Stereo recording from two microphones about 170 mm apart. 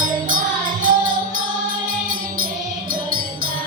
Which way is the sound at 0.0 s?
50° right (ahead or behind).